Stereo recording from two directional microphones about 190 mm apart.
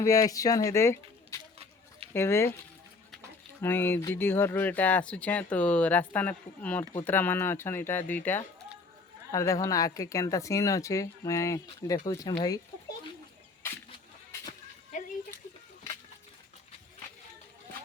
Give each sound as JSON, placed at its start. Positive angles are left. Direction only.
{"t": 0.0, "sound": "speech", "side_deg": 20}
{"t": 3.6, "sound": "speech", "side_deg": 10}